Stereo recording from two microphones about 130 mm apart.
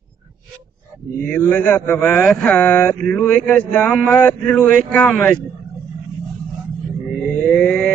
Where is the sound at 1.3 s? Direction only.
10° left (ahead or behind).